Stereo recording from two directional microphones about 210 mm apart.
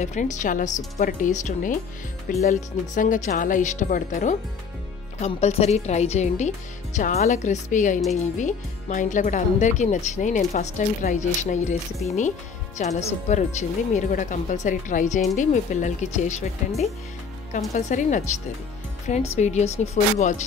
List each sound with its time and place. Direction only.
0.0 s speech: 35° left (ahead or behind)
17.5 s speech: 35° left (ahead or behind)